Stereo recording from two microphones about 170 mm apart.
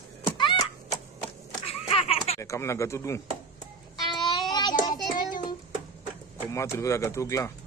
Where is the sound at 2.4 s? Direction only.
15° left (ahead or behind).